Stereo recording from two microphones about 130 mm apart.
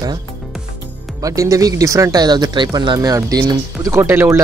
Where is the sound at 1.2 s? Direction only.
25° right (ahead or behind).